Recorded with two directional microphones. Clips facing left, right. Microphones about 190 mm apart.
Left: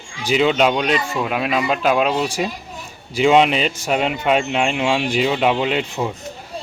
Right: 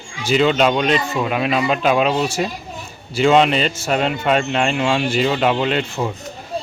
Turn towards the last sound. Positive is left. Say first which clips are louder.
# right 1 dB
turn(degrees=5)  # may be behind; listen again after turning